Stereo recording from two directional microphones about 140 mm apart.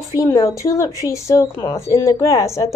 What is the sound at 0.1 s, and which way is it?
Speech, 25° left (ahead or behind).